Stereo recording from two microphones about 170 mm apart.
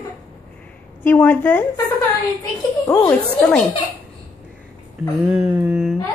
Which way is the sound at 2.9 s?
10° left (ahead or behind).